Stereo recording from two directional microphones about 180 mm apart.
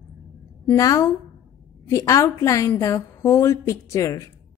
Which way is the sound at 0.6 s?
20° left (ahead or behind).